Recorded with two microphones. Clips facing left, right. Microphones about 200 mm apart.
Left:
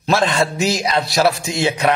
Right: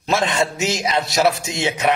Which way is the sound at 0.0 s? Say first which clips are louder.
Left 2 dB; 20° right (ahead or behind).